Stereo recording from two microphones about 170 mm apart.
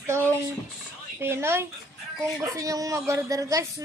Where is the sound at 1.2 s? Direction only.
15° right (ahead or behind).